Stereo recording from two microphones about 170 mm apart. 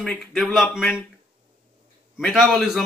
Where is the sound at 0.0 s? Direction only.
Centre (ahead or behind).